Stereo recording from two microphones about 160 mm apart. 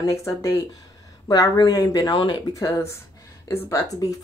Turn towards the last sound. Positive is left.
turn(degrees=20)  # may be behind; listen again after turning